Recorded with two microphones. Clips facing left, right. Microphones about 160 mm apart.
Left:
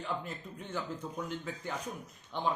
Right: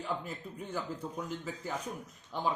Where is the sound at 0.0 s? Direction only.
5° right (ahead or behind).